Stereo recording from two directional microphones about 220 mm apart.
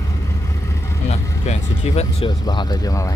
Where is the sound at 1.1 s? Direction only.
30° left (ahead or behind).